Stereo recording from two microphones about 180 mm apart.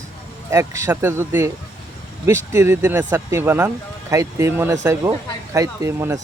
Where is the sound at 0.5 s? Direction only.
15° right (ahead or behind).